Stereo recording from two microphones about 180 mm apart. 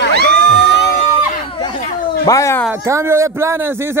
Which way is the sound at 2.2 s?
20° left (ahead or behind).